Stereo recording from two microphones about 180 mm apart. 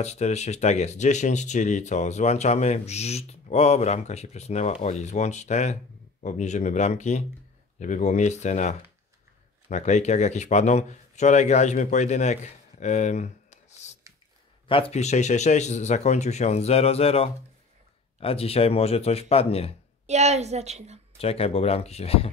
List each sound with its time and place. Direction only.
0.0 s speech: 40° left (ahead or behind)
20.1 s a woman's voice: 40° right (ahead or behind)
21.2 s speech: 35° left (ahead or behind)